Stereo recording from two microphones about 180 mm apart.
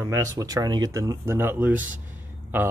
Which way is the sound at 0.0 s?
20° right (ahead or behind).